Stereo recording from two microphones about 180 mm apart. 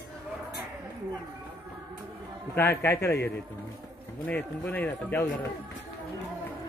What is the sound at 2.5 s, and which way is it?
Speech, 10° left (ahead or behind).